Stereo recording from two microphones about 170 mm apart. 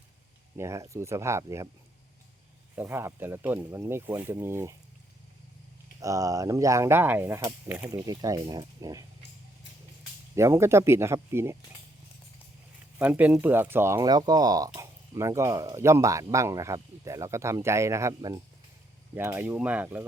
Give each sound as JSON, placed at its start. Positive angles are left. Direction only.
{"t": 0.5, "sound": "speech", "side_deg": -15}
{"t": 2.7, "sound": "speech", "side_deg": -15}
{"t": 6.0, "sound": "speech", "side_deg": -20}
{"t": 10.3, "sound": "speech", "side_deg": -15}
{"t": 13.0, "sound": "speech", "side_deg": -10}